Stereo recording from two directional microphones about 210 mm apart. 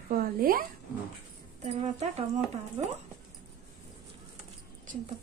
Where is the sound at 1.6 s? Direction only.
30° right (ahead or behind).